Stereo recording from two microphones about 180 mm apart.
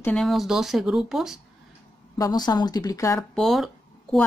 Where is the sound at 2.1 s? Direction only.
20° left (ahead or behind).